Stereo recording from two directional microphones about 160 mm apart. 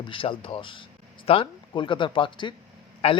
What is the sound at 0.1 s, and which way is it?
A man's voice, 35° left (ahead or behind).